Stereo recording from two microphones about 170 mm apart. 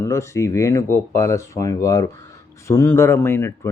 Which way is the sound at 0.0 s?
15° left (ahead or behind).